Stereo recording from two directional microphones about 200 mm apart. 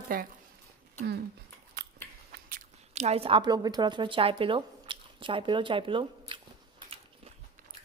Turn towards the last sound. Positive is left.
turn(degrees=-25)  # may be behind; listen again after turning